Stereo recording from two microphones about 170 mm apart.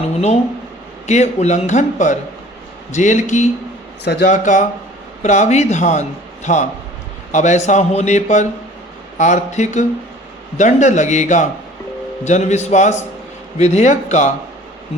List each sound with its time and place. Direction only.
1.0 s a man's voice: 40° left (ahead or behind)
4.0 s speech: 70° left (ahead or behind)
4.3 s a man's voice: 45° left (ahead or behind)